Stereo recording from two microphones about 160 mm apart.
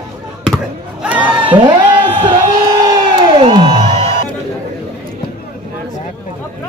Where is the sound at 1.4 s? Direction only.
30° right (ahead or behind).